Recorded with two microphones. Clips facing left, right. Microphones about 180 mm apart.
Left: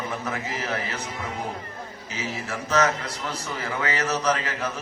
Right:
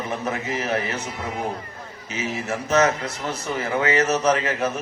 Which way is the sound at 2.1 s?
20° right (ahead or behind).